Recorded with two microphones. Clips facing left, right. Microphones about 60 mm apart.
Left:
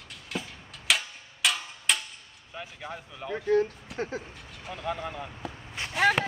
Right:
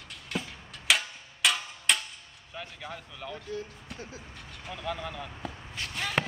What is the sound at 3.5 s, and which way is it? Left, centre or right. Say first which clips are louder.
Speech: left 13 dB; left.